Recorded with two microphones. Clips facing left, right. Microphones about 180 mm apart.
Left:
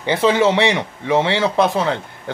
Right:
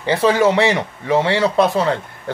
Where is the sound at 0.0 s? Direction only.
20° left (ahead or behind).